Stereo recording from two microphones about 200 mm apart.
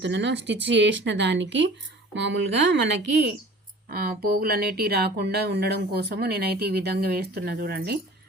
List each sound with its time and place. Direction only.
0.0 s speech: 60° right (ahead or behind)